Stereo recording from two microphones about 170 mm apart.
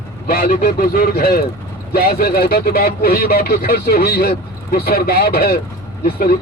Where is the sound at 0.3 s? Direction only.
65° left (ahead or behind).